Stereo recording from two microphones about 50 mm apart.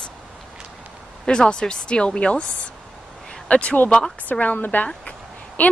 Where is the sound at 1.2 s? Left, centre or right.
Centre.